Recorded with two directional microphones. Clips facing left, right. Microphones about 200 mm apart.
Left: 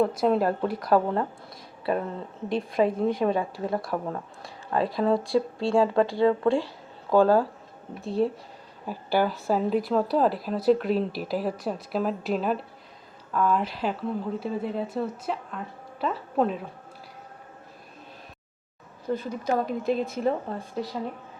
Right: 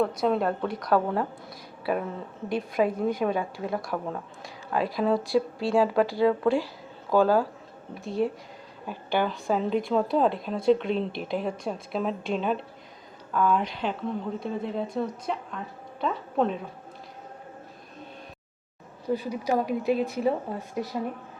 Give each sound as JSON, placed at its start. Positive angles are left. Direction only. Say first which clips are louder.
{"t": 0.2, "sound": "a woman's voice", "louder": "left 2 dB", "side_deg": 0}
{"t": 8.0, "sound": "speech", "louder": "left 2 dB", "side_deg": 30}
{"t": 8.9, "sound": "a woman's voice", "louder": "left 2 dB", "side_deg": 5}
{"t": 19.0, "sound": "speech", "louder": "even", "side_deg": -10}